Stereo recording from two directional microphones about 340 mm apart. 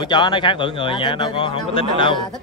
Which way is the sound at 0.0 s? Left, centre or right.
Centre.